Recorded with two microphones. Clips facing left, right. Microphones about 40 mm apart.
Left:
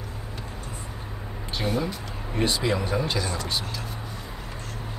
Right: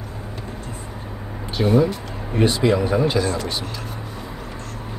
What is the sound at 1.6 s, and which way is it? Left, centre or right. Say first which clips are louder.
Speech: right 10 dB; centre.